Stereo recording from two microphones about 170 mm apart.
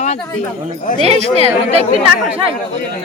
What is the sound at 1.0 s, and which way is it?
Speech, 35° right (ahead or behind).